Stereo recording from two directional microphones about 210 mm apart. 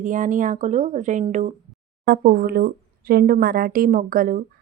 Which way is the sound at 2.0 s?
45° right (ahead or behind).